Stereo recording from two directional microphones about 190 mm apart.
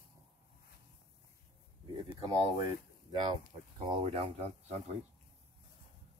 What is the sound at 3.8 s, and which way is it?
Speech, 25° right (ahead or behind).